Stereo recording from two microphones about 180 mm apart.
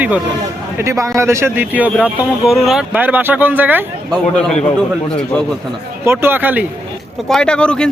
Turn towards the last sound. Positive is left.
turn(degrees=5)  # may be behind; listen again after turning